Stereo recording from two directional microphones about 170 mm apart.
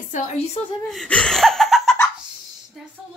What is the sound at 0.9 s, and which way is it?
Laughter, centre (ahead or behind).